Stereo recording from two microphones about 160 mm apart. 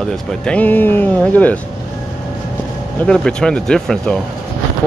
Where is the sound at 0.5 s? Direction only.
10° left (ahead or behind).